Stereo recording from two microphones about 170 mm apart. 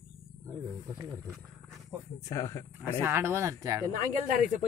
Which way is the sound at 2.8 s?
15° right (ahead or behind).